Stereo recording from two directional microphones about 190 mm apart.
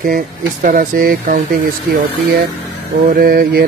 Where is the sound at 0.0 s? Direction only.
45° right (ahead or behind).